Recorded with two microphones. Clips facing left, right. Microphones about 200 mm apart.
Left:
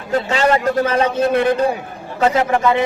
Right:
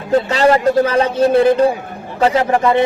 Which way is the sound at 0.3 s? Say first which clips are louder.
Right 1 dB; 35° right (ahead or behind).